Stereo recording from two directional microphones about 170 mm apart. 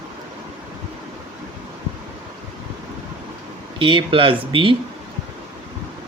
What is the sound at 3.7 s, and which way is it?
Speech, 30° right (ahead or behind).